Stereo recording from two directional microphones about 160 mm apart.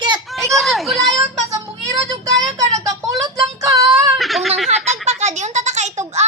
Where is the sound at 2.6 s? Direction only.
20° right (ahead or behind).